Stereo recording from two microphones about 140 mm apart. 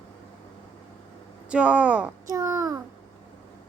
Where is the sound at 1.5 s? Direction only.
10° right (ahead or behind).